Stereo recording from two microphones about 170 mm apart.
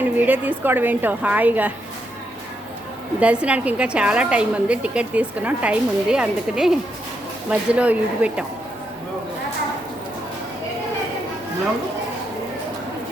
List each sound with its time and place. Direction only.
0.0 s a woman's voice: 10° right (ahead or behind)
3.2 s a woman's voice: 5° right (ahead or behind)